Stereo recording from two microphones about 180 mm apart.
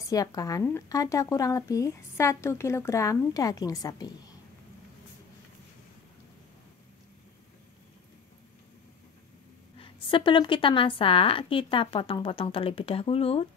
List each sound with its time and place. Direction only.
0.1 s speech: 20° left (ahead or behind)
9.8 s speech: 30° left (ahead or behind)